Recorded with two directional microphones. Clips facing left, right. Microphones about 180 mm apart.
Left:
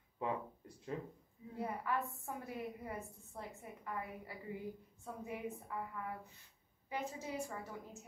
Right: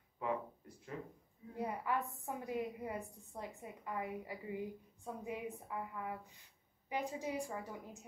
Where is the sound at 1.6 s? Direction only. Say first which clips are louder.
Right 1 dB; 20° right (ahead or behind).